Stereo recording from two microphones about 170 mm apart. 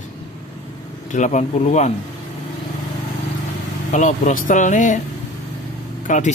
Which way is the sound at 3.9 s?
45° left (ahead or behind).